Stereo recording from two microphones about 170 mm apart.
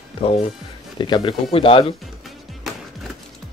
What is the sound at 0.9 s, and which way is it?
Speech, 25° left (ahead or behind).